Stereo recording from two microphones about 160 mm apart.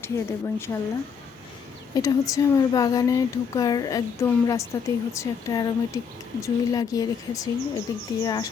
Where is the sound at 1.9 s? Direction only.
20° left (ahead or behind).